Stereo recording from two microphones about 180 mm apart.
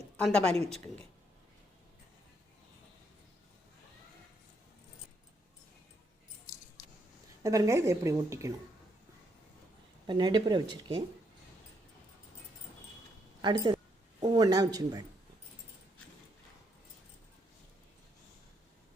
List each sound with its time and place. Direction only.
0.2 s a woman's voice: 5° left (ahead or behind)
7.4 s a woman's voice: 20° right (ahead or behind)
10.1 s speech: 25° right (ahead or behind)
13.4 s speech: 25° right (ahead or behind)